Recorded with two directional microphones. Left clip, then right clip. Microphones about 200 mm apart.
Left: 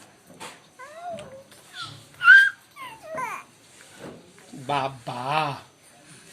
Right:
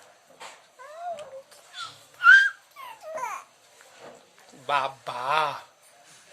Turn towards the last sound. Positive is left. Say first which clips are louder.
# even
turn(degrees=-35)  # may be behind; listen again after turning